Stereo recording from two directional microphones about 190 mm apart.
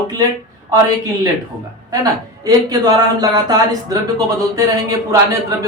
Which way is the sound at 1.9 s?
20° right (ahead or behind).